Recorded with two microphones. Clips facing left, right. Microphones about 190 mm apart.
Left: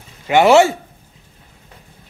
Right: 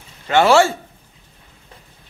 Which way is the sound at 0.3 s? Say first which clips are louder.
Left 3 dB; 15° left (ahead or behind).